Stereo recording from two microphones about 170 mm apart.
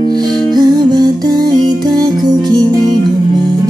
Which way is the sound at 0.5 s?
25° right (ahead or behind).